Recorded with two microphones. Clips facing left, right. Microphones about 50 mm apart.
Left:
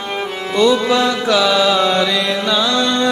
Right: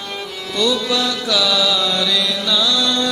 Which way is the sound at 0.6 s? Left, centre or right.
Left.